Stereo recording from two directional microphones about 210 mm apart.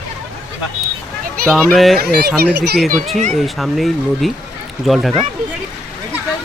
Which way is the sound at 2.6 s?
50° right (ahead or behind).